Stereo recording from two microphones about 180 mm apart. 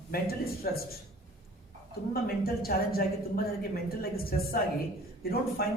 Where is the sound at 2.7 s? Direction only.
55° left (ahead or behind).